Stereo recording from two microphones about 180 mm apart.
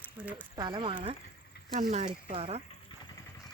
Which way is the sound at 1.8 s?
40° right (ahead or behind).